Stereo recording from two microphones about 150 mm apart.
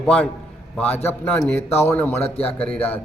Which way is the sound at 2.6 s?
10° left (ahead or behind).